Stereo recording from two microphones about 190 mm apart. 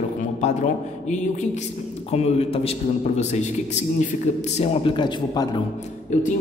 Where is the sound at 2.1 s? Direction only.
35° left (ahead or behind).